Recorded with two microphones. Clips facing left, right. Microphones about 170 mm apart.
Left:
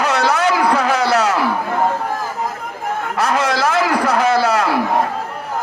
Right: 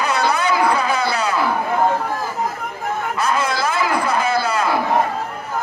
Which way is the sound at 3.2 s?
85° left.